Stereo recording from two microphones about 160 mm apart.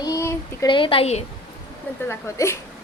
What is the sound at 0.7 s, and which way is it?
Speech, 35° left (ahead or behind).